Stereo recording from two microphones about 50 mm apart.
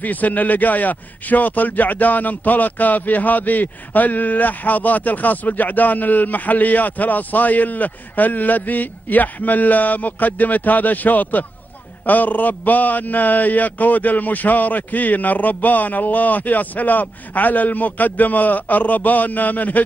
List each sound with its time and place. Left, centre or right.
0.0 s a man's voice: left